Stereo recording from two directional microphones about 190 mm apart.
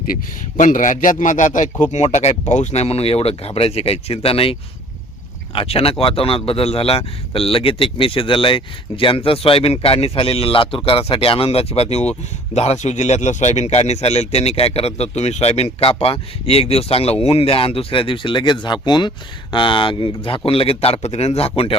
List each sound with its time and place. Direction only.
0.1 s a man's voice: 45° left (ahead or behind)
5.5 s a man's voice: 30° left (ahead or behind)